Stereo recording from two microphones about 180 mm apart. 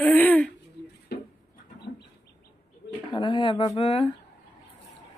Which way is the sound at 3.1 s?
25° left (ahead or behind).